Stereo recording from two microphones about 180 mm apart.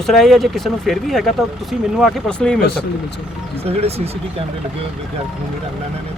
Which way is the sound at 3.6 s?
35° right (ahead or behind).